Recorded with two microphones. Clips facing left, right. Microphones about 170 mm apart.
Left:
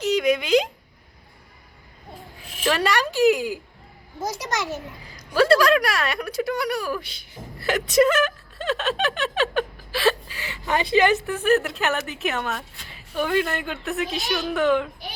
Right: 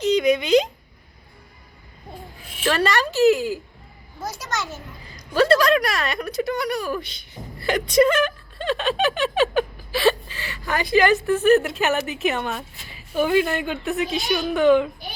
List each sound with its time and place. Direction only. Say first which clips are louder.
0.0 s speech: right 2 dB; 5° left (ahead or behind)
2.6 s speech: right 1 dB; 10° left (ahead or behind)
5.1 s speech: even; 5° left (ahead or behind)